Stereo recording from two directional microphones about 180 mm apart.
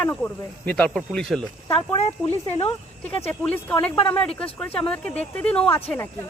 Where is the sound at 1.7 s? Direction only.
30° left (ahead or behind).